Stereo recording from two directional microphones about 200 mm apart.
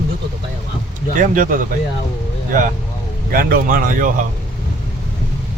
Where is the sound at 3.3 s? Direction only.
45° right (ahead or behind).